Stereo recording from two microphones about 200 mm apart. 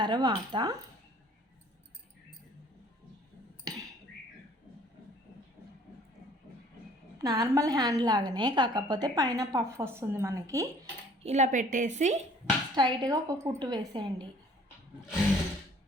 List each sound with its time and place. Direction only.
0.0 s speech: 20° right (ahead or behind)
3.7 s a sound: 20° right (ahead or behind)
7.2 s a woman's voice: 20° right (ahead or behind)
11.2 s a woman's voice: 35° right (ahead or behind)
12.7 s speech: 20° right (ahead or behind)